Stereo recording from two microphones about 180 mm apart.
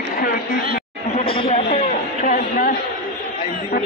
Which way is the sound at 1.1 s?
35° left (ahead or behind).